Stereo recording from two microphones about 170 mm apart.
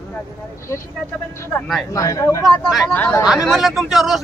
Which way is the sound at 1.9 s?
20° left (ahead or behind).